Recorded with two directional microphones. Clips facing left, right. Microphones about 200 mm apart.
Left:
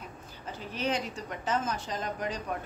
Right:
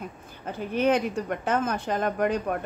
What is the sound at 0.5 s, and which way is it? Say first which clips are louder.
Speech: right 9 dB; 55° right (ahead or behind).